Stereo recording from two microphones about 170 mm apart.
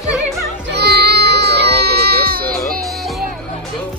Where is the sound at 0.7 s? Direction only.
75° right (ahead or behind).